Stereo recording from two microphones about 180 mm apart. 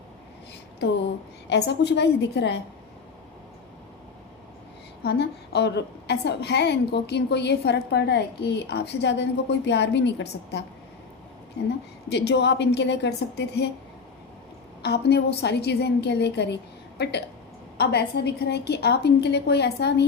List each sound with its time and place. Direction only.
1.5 s a woman's voice: 70° left (ahead or behind)
5.0 s a woman's voice: 70° left (ahead or behind)
12.0 s a woman's voice: 70° left (ahead or behind)
14.8 s a woman's voice: 65° left (ahead or behind)